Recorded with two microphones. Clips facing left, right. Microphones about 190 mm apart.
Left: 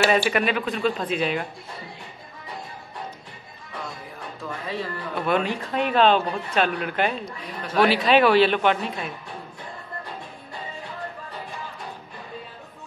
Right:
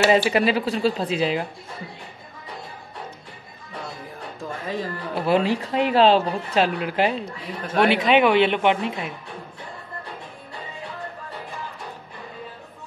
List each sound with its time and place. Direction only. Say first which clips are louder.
0.0 s speech: right 3 dB; 20° right (ahead or behind)
4.4 s music: right 2 dB; 45° right (ahead or behind)
5.1 s speech: right 4 dB; 30° right (ahead or behind)